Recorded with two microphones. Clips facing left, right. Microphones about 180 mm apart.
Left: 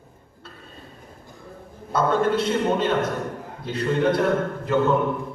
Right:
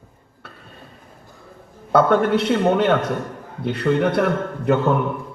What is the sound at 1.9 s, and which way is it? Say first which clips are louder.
A man's voice: right 5 dB; 65° right (ahead or behind).